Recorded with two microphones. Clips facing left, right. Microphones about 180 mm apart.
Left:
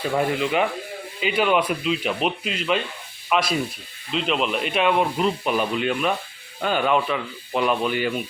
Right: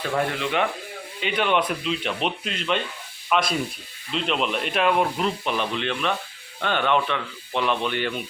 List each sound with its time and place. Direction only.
0.0 s speech: 10° left (ahead or behind)